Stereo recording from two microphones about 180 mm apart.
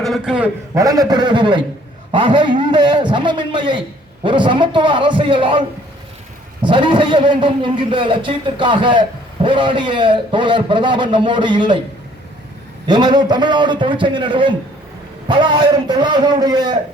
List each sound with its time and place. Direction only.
0.0 s a man's voice: centre (ahead or behind)
0.8 s a man's voice: 20° right (ahead or behind)
12.9 s a man's voice: 25° right (ahead or behind)